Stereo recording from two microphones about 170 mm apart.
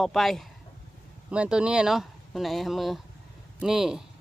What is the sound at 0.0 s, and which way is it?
Speech, centre (ahead or behind).